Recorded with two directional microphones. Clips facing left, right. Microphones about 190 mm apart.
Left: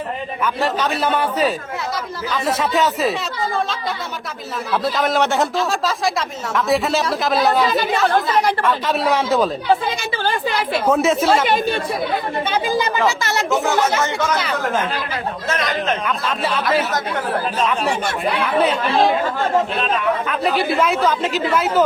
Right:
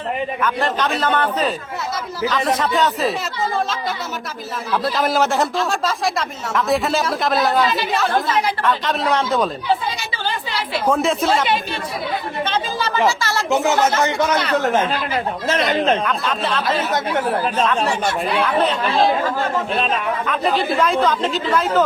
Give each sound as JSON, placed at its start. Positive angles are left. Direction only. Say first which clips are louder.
{"t": 0.4, "sound": "speech", "louder": "left 2 dB", "side_deg": 10}
{"t": 4.7, "sound": "speech", "louder": "even", "side_deg": 0}
{"t": 10.0, "sound": "a woman's voice", "louder": "left 5 dB", "side_deg": 50}
{"t": 10.8, "sound": "speech", "louder": "left 1 dB", "side_deg": 5}
{"t": 11.4, "sound": "a woman's voice", "louder": "left 4 dB", "side_deg": 45}
{"t": 12.5, "sound": "speech", "louder": "left 3 dB", "side_deg": 15}
{"t": 14.0, "sound": "speech", "louder": "right 2 dB", "side_deg": -15}
{"t": 16.0, "sound": "speech", "louder": "even", "side_deg": 5}
{"t": 18.4, "sound": "speech", "louder": "left 3 dB", "side_deg": 10}
{"t": 20.2, "sound": "speech", "louder": "even", "side_deg": 5}